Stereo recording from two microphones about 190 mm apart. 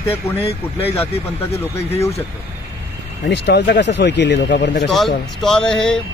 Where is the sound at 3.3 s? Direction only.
65° left (ahead or behind).